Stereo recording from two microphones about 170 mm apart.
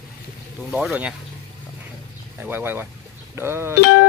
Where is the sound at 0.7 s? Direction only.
10° right (ahead or behind).